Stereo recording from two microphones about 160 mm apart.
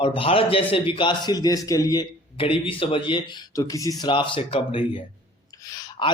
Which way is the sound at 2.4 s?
35° left (ahead or behind).